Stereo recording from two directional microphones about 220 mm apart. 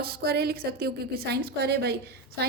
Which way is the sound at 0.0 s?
45° right (ahead or behind).